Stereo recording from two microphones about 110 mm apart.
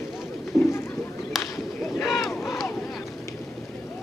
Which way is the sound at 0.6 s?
20° left (ahead or behind).